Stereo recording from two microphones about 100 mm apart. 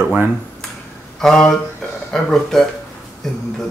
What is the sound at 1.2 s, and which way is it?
Speech, 5° left (ahead or behind).